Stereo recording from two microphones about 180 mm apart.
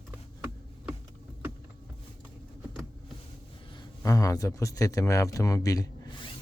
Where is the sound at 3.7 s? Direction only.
20° left (ahead or behind).